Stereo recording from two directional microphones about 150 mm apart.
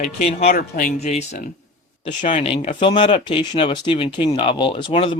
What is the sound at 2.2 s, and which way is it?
Speech, 55° left (ahead or behind).